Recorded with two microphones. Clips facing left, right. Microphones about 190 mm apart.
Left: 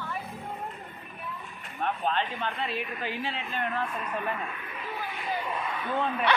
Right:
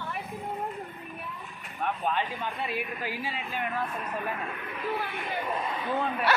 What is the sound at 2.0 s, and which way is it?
A woman's voice, 10° right (ahead or behind).